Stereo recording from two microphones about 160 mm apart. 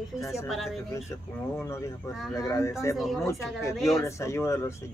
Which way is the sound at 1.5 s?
15° left (ahead or behind).